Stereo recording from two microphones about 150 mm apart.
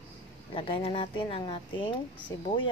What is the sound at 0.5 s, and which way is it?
A woman's voice, 35° left (ahead or behind).